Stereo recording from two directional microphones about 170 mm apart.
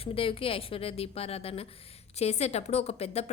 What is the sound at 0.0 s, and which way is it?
A woman's voice, 35° left (ahead or behind).